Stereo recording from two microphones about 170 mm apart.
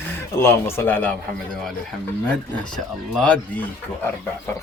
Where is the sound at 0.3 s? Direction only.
10° left (ahead or behind).